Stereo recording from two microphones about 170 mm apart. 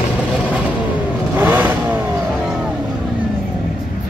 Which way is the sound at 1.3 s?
10° right (ahead or behind).